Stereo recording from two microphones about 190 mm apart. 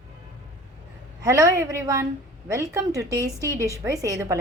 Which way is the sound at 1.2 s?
20° right (ahead or behind).